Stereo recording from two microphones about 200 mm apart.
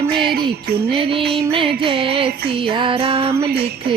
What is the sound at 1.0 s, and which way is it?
Music, 25° right (ahead or behind).